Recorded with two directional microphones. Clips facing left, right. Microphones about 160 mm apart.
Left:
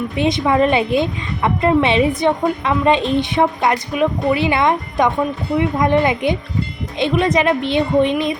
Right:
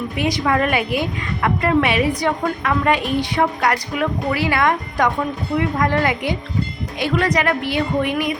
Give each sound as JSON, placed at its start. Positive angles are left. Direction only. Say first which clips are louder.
{"t": 0.2, "sound": "a woman's voice", "louder": "left 4 dB", "side_deg": 25}